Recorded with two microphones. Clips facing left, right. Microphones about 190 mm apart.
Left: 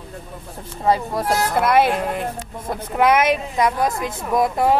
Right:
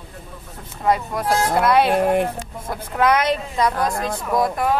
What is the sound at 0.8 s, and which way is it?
Speech, 30° left (ahead or behind).